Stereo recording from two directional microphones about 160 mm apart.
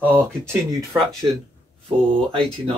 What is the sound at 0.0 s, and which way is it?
Speech, 15° right (ahead or behind).